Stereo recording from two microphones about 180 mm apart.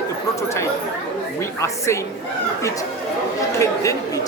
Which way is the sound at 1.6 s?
15° left (ahead or behind).